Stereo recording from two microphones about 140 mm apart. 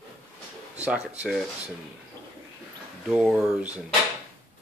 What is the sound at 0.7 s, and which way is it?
Speech, 10° right (ahead or behind).